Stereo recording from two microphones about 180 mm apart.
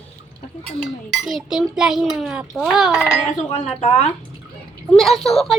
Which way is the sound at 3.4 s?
35° left (ahead or behind).